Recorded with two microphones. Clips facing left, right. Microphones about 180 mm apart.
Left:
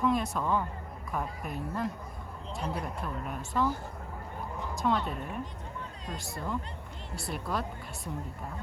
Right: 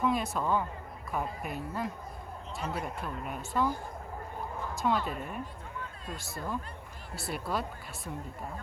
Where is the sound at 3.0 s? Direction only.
Centre (ahead or behind).